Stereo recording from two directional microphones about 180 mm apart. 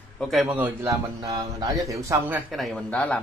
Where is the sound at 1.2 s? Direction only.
20° right (ahead or behind).